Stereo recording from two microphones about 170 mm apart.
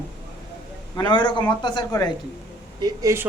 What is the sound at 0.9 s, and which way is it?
A man's voice, 25° left (ahead or behind).